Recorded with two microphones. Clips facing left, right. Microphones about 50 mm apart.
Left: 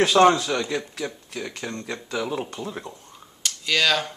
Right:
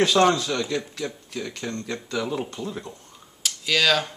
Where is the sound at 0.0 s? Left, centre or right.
Left.